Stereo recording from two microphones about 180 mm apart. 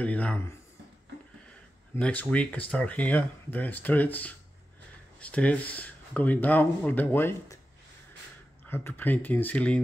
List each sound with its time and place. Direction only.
0.0 s speech: 10° left (ahead or behind)
2.0 s speech: 5° left (ahead or behind)
8.6 s speech: 10° left (ahead or behind)